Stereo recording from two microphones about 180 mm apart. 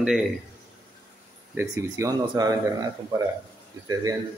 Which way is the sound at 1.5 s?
15° right (ahead or behind).